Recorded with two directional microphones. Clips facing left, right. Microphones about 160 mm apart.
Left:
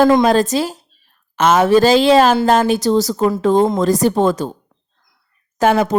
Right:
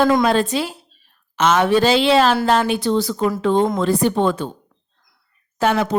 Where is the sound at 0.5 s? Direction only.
40° left (ahead or behind).